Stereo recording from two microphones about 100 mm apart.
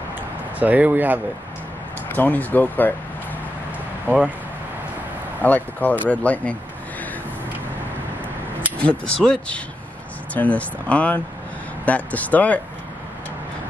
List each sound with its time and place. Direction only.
0.6 s speech: 15° right (ahead or behind)
2.1 s speech: 20° left (ahead or behind)
5.4 s speech: 15° left (ahead or behind)
8.7 s speech: 10° left (ahead or behind)